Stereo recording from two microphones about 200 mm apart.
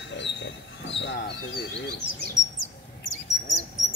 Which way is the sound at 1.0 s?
55° left (ahead or behind).